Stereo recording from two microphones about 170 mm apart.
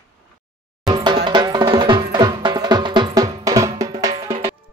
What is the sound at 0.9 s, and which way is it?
Music, 25° right (ahead or behind).